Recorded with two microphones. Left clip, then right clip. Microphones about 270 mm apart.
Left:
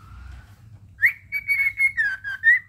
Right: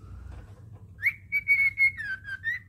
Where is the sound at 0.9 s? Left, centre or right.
Centre.